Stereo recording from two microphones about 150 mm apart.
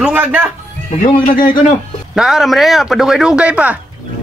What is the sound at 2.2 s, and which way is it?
Speech, 5° right (ahead or behind).